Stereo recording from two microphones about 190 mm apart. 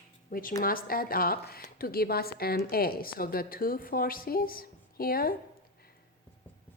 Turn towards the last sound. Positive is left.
turn(degrees=50)  # may be behind; listen again after turning